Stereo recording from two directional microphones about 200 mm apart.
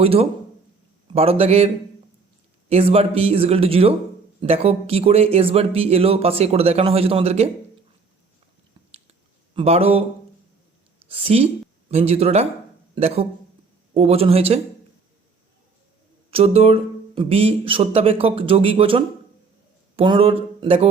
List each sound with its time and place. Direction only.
0.0 s a man's voice: 30° right (ahead or behind)
9.6 s speech: 30° right (ahead or behind)
11.1 s a man's voice: 30° right (ahead or behind)
16.3 s a man's voice: 30° right (ahead or behind)